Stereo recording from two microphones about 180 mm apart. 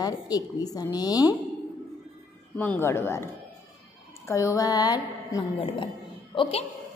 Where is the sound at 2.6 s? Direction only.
15° left (ahead or behind).